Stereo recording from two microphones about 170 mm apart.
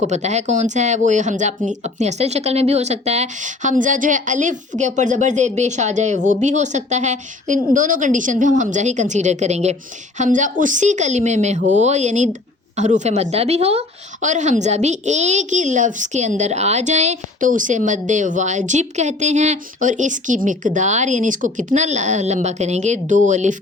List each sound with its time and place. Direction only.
0.1 s speech: 40° right (ahead or behind)